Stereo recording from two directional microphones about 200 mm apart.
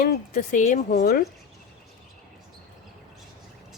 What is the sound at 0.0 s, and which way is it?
A woman's voice, 45° left (ahead or behind).